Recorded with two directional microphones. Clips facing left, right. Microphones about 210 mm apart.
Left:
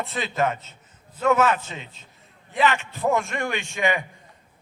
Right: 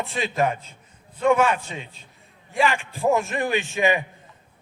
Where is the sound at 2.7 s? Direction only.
15° right (ahead or behind).